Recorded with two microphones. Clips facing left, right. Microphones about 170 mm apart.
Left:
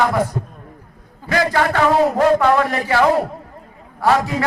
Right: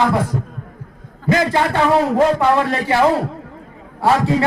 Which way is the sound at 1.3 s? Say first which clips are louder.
Right 1 dB; 20° right (ahead or behind).